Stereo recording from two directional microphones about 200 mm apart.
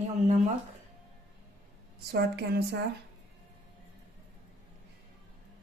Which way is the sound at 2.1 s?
55° right (ahead or behind).